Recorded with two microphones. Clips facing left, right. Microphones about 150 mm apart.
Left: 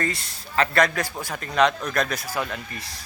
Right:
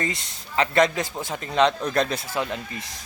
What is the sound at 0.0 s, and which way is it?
Speech, 20° right (ahead or behind).